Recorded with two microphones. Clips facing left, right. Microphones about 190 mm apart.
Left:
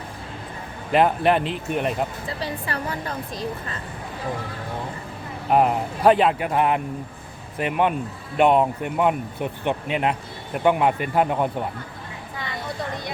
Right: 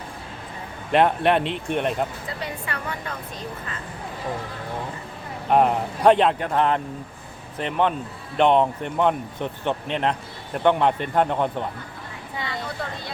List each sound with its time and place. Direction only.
0.9 s speech: centre (ahead or behind)
2.4 s a woman's voice: 35° left (ahead or behind)
5.5 s speech: 5° left (ahead or behind)